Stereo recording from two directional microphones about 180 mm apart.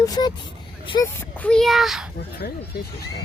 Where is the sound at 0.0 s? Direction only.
20° left (ahead or behind).